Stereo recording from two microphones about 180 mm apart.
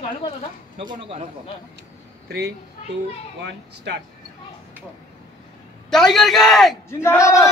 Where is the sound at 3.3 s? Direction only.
75° right (ahead or behind).